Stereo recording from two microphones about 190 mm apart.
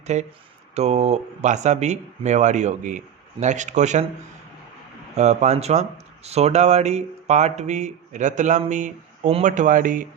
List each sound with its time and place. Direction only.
0.1 s speech: 40° right (ahead or behind)
5.1 s speech: 35° right (ahead or behind)